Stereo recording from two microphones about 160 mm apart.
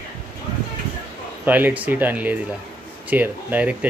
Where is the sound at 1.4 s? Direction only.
10° right (ahead or behind).